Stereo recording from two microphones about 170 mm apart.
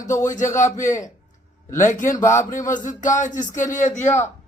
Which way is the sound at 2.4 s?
50° left (ahead or behind).